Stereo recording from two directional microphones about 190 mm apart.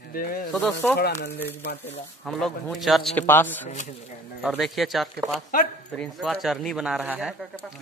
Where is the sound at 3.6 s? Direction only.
40° left (ahead or behind).